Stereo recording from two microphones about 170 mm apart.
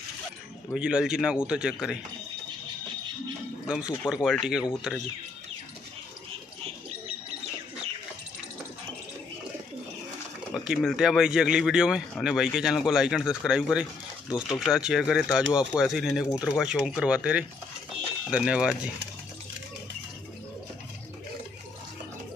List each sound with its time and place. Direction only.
0.7 s speech: 5° right (ahead or behind)
3.6 s speech: 5° right (ahead or behind)
10.5 s speech: centre (ahead or behind)